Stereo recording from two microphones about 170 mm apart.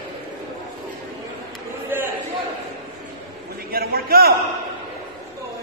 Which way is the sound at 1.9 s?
10° right (ahead or behind).